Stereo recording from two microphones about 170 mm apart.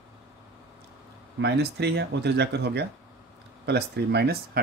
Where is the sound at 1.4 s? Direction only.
75° right (ahead or behind).